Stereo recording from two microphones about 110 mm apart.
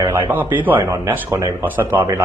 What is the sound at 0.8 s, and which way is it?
Speech, 30° right (ahead or behind).